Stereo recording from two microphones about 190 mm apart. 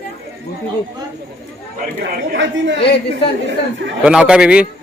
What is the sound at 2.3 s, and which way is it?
Speech, 70° right (ahead or behind).